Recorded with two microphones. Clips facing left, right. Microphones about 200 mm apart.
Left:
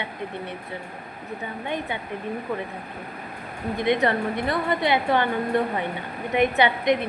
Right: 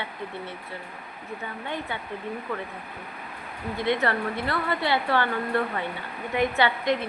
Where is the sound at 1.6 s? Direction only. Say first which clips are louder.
Left 4 dB; 15° left (ahead or behind).